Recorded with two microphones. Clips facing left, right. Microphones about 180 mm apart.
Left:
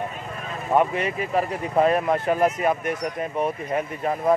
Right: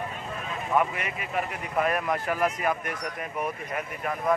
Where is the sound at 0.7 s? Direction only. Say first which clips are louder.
Left 6 dB; 30° left (ahead or behind).